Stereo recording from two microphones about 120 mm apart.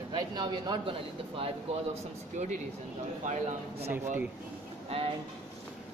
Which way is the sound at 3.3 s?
65° right (ahead or behind).